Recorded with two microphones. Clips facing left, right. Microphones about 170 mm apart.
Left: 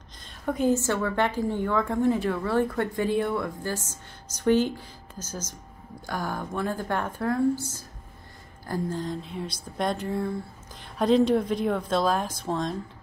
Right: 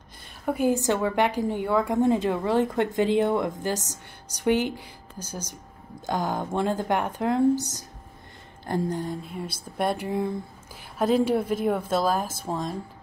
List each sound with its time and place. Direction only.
0.5 s a woman's voice: 10° right (ahead or behind)
3.8 s a woman's voice: 70° right (ahead or behind)
4.5 s a woman's voice: 15° right (ahead or behind)
8.6 s speech: 20° right (ahead or behind)